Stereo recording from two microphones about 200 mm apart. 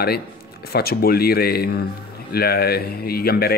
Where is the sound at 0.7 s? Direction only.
50° left (ahead or behind).